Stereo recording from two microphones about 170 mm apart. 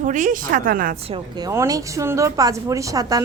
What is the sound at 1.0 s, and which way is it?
A woman's voice, 30° right (ahead or behind).